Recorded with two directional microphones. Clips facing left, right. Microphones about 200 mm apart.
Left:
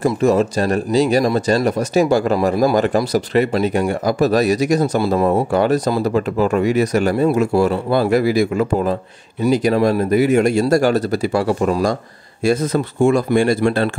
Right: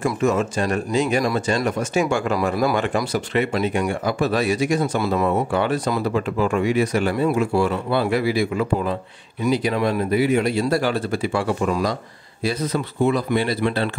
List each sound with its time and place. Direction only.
0.0 s speech: 35° left (ahead or behind)